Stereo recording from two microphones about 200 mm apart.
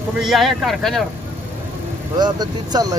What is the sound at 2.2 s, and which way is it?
Speech, 20° right (ahead or behind).